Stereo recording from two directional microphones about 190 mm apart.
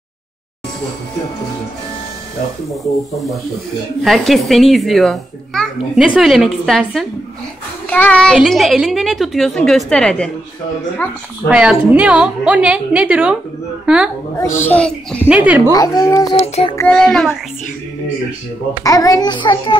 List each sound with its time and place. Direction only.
2.7 s a child's voice: centre (ahead or behind)
11.4 s a woman's voice: 5° right (ahead or behind)
14.6 s speech: 5° left (ahead or behind)
15.2 s a woman's voice: 5° right (ahead or behind)
15.7 s speech: 20° left (ahead or behind)
16.3 s a child's voice: 30° left (ahead or behind)
16.7 s a child's voice: 5° left (ahead or behind)
18.9 s a child's voice: 20° left (ahead or behind)